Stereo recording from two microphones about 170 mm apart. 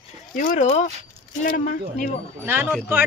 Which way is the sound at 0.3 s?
50° left (ahead or behind).